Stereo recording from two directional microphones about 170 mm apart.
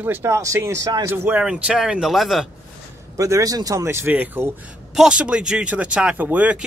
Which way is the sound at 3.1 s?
20° right (ahead or behind).